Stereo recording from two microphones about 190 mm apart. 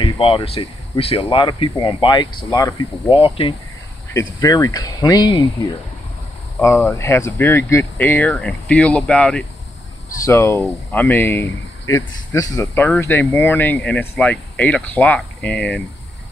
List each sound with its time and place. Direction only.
0.0 s speech: 30° left (ahead or behind)
4.4 s speech: 20° left (ahead or behind)
6.6 s speech: 15° left (ahead or behind)